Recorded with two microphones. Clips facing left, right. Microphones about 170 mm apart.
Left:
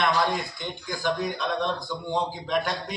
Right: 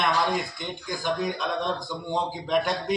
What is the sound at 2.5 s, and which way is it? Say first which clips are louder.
Speech: right 4 dB; centre (ahead or behind).